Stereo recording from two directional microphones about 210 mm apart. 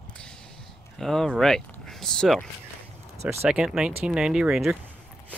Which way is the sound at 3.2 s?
10° right (ahead or behind).